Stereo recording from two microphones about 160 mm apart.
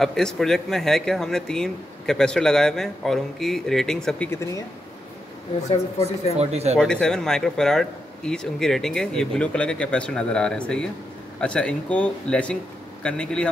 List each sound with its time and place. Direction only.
0.0 s a man's voice: 5° left (ahead or behind)
6.3 s speech: 40° right (ahead or behind)
6.8 s a man's voice: 5° left (ahead or behind)